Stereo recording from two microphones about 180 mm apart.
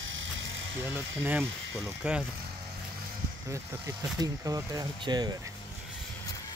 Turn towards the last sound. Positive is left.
turn(degrees=-20)  # may be behind; listen again after turning